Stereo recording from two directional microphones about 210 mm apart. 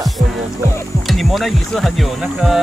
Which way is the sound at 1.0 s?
Centre (ahead or behind).